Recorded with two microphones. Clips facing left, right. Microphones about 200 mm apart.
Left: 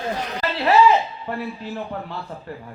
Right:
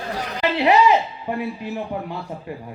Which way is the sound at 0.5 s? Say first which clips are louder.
Even; 15° right (ahead or behind).